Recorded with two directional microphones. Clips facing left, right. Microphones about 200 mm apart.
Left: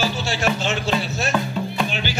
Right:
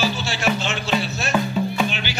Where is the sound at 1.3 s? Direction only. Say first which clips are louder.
Right 5 dB; 5° right (ahead or behind).